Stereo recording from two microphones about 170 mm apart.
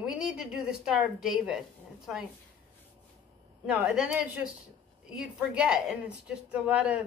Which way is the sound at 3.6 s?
5° right (ahead or behind).